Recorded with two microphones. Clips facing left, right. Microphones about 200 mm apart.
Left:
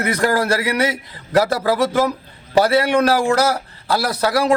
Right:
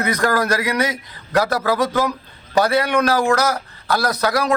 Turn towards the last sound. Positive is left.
turn(degrees=30)  # may be behind; listen again after turning